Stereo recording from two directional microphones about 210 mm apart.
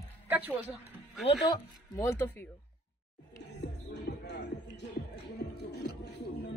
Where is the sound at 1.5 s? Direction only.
15° left (ahead or behind).